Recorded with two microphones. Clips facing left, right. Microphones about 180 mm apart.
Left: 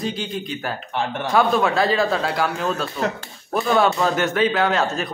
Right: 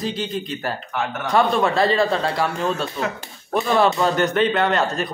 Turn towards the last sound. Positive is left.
turn(degrees=0)  # may be behind; listen again after turning